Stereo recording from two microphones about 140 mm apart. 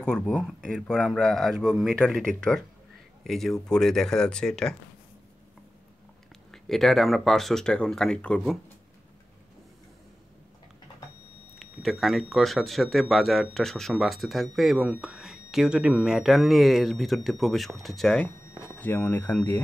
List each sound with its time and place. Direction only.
0.0 s speech: 5° left (ahead or behind)
6.5 s speech: centre (ahead or behind)
11.5 s speech: centre (ahead or behind)